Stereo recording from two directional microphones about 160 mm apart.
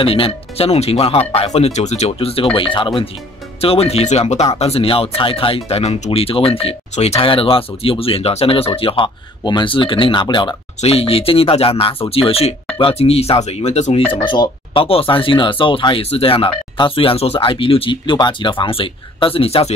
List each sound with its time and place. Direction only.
0.0 s speech: 35° left (ahead or behind)
14.2 s speech: 30° left (ahead or behind)